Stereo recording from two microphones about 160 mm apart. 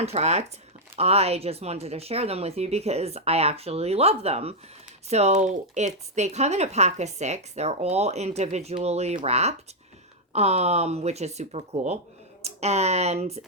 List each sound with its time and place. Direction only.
0.0 s speech: 40° right (ahead or behind)